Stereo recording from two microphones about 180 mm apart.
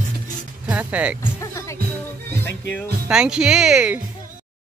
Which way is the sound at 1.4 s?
15° left (ahead or behind).